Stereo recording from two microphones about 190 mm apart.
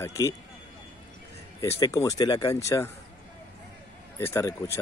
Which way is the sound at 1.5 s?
15° left (ahead or behind).